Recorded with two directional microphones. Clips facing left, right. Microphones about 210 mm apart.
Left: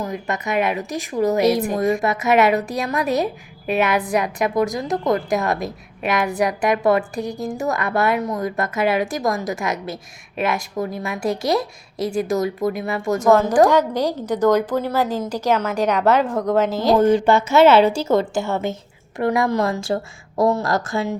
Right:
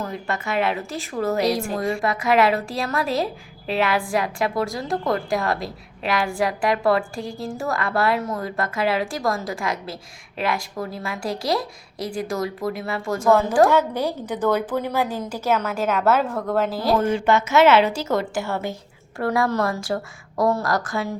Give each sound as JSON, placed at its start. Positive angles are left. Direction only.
{"t": 0.0, "sound": "a woman's voice", "side_deg": 15}
{"t": 14.8, "sound": "a woman's voice", "side_deg": -15}
{"t": 16.3, "sound": "a woman's voice", "side_deg": 20}
{"t": 17.0, "sound": "a woman's voice", "side_deg": 35}